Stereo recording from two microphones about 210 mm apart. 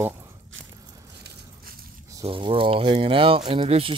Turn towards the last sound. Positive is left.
turn(degrees=-25)  # may be behind; listen again after turning